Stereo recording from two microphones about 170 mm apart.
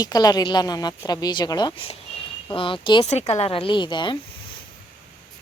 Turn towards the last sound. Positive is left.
turn(degrees=25)  # may be behind; listen again after turning